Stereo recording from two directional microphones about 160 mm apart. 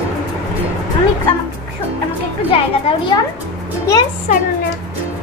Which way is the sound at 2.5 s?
35° left (ahead or behind).